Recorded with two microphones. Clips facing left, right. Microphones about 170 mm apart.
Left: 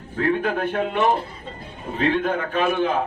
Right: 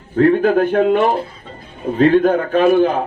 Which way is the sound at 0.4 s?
40° right (ahead or behind).